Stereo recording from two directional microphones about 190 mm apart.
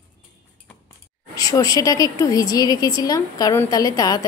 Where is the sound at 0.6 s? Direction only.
15° left (ahead or behind).